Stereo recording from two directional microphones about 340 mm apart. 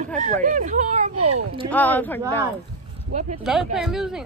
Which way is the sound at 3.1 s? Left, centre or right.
Right.